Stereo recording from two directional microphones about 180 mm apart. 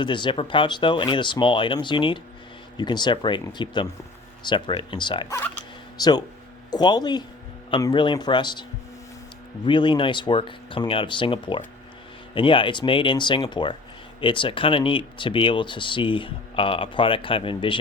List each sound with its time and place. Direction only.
0.0 s speech: 25° left (ahead or behind)
9.6 s speech: 25° left (ahead or behind)